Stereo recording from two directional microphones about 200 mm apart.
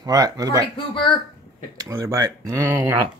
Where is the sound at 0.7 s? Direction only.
25° left (ahead or behind).